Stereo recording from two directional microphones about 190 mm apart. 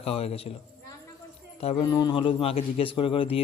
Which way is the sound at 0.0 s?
30° left (ahead or behind).